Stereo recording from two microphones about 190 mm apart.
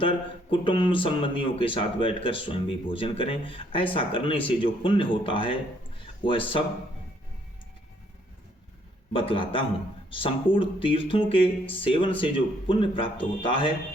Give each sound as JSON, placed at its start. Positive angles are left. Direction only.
{"t": 0.5, "sound": "speech", "side_deg": 25}
{"t": 9.1, "sound": "speech", "side_deg": 30}